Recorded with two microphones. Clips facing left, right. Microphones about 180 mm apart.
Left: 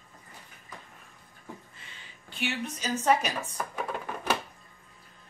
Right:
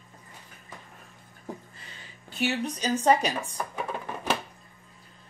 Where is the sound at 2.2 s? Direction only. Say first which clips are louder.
Right 5 dB; 40° right (ahead or behind).